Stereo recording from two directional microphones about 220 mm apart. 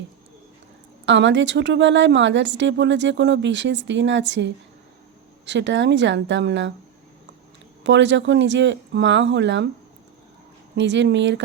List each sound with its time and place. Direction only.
1.0 s a woman's voice: 55° right (ahead or behind)
7.9 s a woman's voice: 55° right (ahead or behind)
10.8 s speech: 55° right (ahead or behind)